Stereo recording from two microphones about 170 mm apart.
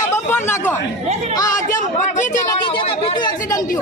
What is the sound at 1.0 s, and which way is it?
Chatter, 40° right (ahead or behind).